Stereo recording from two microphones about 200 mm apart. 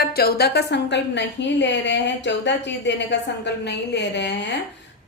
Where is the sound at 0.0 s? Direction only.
50° left (ahead or behind).